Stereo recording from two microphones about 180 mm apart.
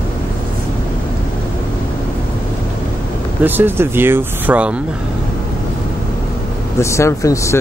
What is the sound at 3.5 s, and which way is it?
Speech, 10° right (ahead or behind).